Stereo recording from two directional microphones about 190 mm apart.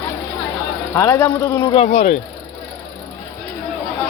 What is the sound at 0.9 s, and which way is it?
Speech, 15° left (ahead or behind).